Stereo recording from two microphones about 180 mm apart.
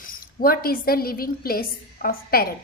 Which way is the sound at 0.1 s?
55° left (ahead or behind).